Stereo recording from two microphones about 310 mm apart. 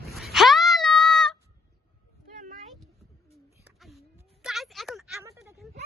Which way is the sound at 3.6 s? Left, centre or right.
Centre.